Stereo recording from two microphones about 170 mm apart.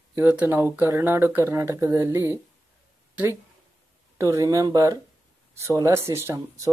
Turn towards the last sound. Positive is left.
turn(degrees=-15)  # may be behind; listen again after turning